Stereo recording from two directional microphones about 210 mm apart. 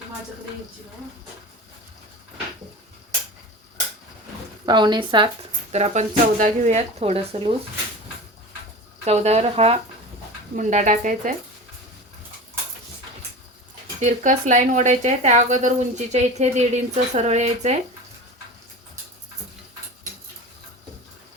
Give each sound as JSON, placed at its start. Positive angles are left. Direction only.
{"t": 4.6, "sound": "speech", "side_deg": -20}
{"t": 9.0, "sound": "speech", "side_deg": -30}
{"t": 14.0, "sound": "speech", "side_deg": -35}